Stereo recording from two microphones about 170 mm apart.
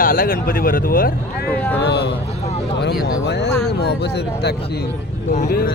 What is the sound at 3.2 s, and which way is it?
Speech, 80° left.